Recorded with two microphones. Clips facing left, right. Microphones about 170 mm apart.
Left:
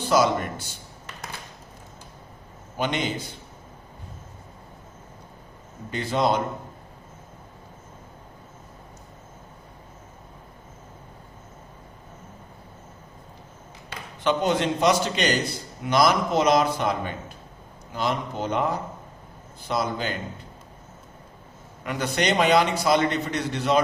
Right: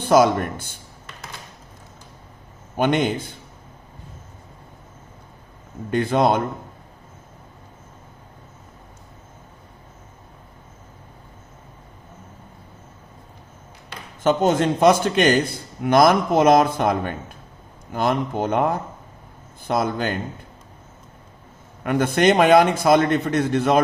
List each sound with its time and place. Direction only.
0.0 s a man's voice: 55° right (ahead or behind)
2.7 s a man's voice: 55° right (ahead or behind)
5.9 s a man's voice: 55° right (ahead or behind)
14.3 s a man's voice: 45° right (ahead or behind)
21.8 s a man's voice: 50° right (ahead or behind)